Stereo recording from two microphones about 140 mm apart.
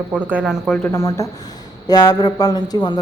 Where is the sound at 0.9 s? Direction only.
20° left (ahead or behind).